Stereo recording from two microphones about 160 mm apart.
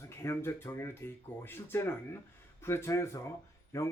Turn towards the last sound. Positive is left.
turn(degrees=15)  # may be behind; listen again after turning